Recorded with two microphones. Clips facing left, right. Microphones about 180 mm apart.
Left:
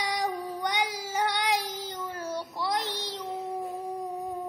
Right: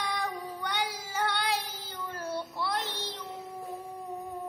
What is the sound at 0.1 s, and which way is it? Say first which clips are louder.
Child singing: left 4 dB; 15° left (ahead or behind).